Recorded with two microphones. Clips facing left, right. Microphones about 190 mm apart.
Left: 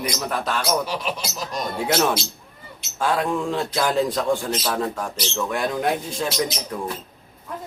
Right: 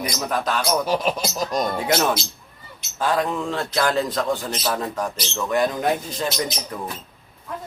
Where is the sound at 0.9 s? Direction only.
45° right (ahead or behind).